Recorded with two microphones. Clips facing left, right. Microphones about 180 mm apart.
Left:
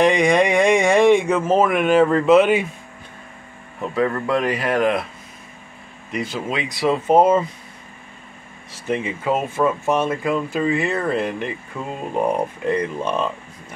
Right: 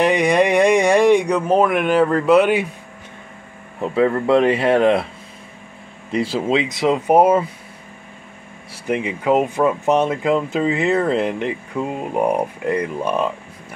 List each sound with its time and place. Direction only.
0.0 s speech: 5° right (ahead or behind)
3.9 s speech: 25° right (ahead or behind)
6.1 s speech: 30° right (ahead or behind); by 7.4 s 10° right (ahead or behind)
8.7 s speech: 15° right (ahead or behind)